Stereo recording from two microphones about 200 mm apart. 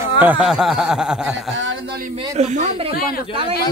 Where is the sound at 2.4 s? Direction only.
35° right (ahead or behind).